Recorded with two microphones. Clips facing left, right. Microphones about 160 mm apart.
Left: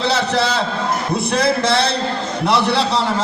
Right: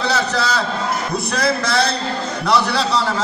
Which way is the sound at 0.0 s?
25° left (ahead or behind).